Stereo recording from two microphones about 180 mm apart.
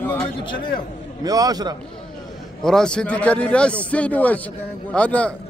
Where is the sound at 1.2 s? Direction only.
20° right (ahead or behind).